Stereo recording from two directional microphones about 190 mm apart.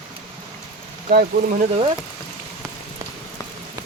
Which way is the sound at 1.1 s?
55° right (ahead or behind).